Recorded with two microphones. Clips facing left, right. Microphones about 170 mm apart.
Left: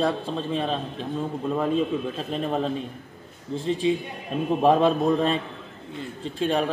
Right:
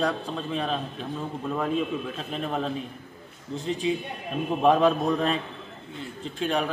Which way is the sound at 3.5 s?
30° left (ahead or behind).